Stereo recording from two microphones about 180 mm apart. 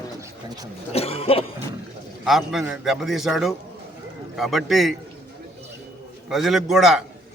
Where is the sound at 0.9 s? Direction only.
35° left (ahead or behind).